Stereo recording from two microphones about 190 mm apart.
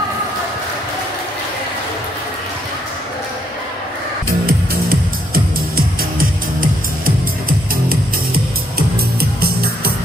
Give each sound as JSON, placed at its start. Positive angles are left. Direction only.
{"t": 4.5, "sound": "music", "side_deg": -50}
{"t": 8.7, "sound": "music", "side_deg": -55}